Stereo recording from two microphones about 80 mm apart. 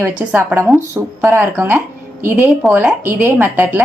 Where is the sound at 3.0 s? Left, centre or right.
Right.